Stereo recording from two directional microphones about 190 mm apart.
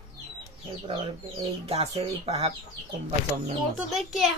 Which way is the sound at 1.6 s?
30° right (ahead or behind).